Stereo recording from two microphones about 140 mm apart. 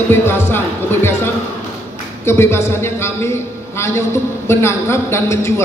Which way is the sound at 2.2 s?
20° left (ahead or behind).